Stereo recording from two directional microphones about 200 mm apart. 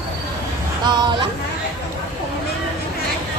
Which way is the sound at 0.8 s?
20° right (ahead or behind).